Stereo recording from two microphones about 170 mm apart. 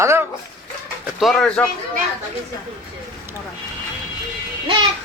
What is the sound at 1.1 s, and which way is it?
Speech, centre (ahead or behind).